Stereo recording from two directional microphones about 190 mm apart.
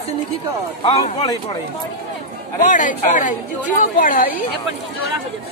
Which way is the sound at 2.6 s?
40° left (ahead or behind).